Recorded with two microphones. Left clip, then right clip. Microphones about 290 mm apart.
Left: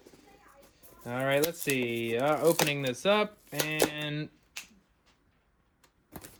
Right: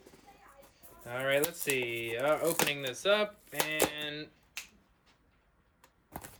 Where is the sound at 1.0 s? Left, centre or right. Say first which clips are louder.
Left 2 dB; centre.